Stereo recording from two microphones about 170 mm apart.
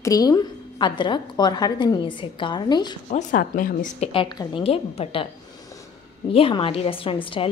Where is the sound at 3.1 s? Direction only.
50° left (ahead or behind).